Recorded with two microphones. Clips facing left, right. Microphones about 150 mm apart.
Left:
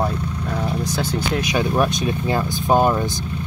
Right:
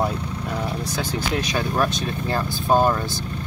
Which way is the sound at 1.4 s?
15° left (ahead or behind).